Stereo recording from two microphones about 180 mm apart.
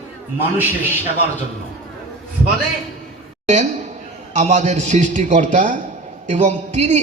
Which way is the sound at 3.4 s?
40° right (ahead or behind).